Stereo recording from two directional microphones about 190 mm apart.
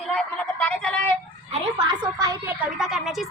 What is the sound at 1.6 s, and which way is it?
Speech, 25° right (ahead or behind).